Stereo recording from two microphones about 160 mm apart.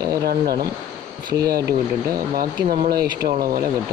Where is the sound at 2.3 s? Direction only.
65° right (ahead or behind).